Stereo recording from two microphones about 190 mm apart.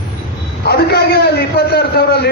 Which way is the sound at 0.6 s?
55° left (ahead or behind).